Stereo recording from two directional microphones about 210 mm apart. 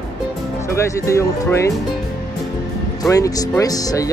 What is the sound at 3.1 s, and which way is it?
Speech, 15° left (ahead or behind).